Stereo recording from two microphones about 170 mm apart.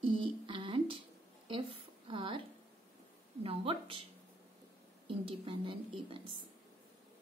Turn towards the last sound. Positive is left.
turn(degrees=-30)  # may be behind; listen again after turning